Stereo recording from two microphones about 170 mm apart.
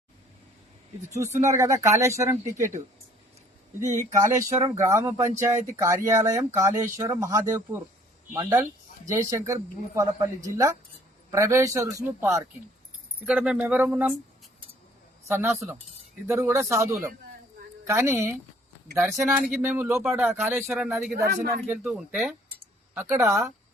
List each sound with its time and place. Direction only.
1.1 s speech: 15° right (ahead or behind)
4.1 s speech: 20° right (ahead or behind)
13.2 s speech: 5° right (ahead or behind)
15.3 s speech: 15° right (ahead or behind)
23.0 s speech: 15° right (ahead or behind)